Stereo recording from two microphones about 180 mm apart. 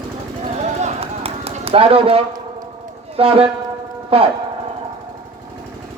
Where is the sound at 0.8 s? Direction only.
35° right (ahead or behind).